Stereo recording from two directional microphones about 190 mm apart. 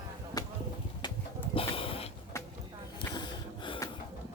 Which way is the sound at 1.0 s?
25° left (ahead or behind).